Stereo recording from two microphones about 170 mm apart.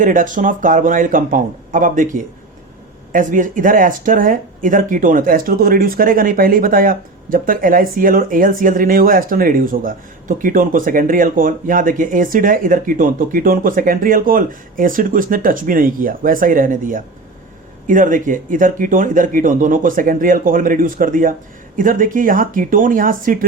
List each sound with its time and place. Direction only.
0.0 s speech: 50° right (ahead or behind)